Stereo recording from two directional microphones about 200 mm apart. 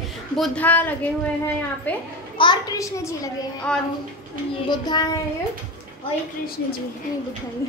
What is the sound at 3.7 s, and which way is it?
Speech, 5° left (ahead or behind).